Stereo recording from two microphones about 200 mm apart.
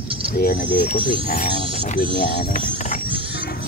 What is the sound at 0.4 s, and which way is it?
Speech, 45° left (ahead or behind).